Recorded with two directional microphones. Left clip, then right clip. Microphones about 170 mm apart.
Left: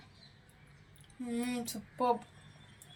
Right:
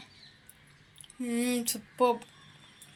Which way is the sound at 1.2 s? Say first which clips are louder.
Right 7 dB; 5° right (ahead or behind).